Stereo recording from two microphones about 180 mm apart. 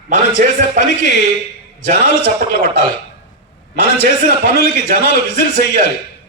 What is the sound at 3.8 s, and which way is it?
A man's voice, 70° left (ahead or behind).